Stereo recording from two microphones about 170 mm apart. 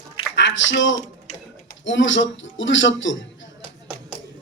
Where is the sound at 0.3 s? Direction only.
90° left.